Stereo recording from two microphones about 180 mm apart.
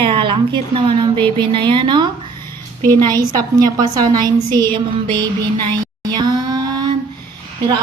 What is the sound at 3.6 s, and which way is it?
A woman's voice, 20° right (ahead or behind).